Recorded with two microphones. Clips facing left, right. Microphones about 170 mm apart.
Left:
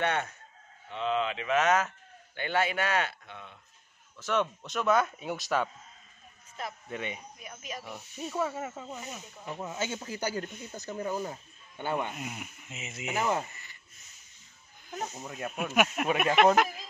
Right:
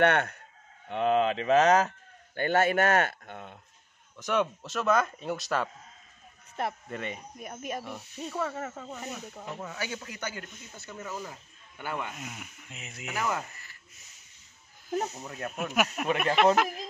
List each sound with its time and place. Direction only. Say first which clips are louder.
0.0 s chicken: right 6 dB; 65° right (ahead or behind)
0.8 s speech: right 5 dB; 55° right (ahead or behind)
4.2 s speech: right 1 dB; 10° right (ahead or behind)
6.9 s speech: right 1 dB; centre (ahead or behind)
7.3 s speech: right 6 dB; 50° right (ahead or behind)
7.8 s speech: right 1 dB; 5° left (ahead or behind)
9.6 s a man's voice: left 4 dB; 20° left (ahead or behind)
12.2 s speech: left 3 dB; 5° left (ahead or behind)
13.0 s speech: left 2 dB; 25° left (ahead or behind)
15.1 s speech: even; 5° left (ahead or behind)